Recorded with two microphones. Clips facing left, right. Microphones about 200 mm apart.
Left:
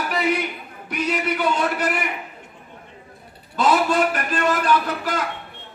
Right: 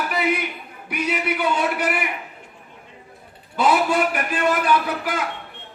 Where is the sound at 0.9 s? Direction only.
5° right (ahead or behind).